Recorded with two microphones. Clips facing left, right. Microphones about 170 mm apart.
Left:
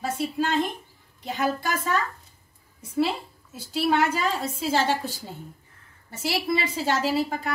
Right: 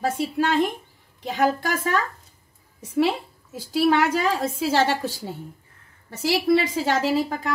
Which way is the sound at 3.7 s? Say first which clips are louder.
Right 3 dB; 65° right (ahead or behind).